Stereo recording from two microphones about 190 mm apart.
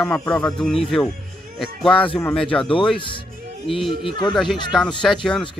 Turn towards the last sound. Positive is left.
turn(degrees=0)  # may be behind; listen again after turning